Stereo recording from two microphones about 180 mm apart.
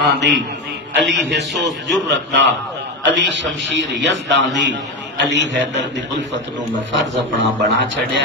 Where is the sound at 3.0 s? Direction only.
80° right.